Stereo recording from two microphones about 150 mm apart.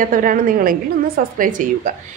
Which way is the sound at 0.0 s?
65° right (ahead or behind).